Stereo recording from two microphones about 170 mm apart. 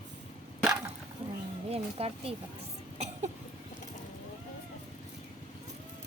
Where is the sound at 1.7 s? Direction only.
35° right (ahead or behind).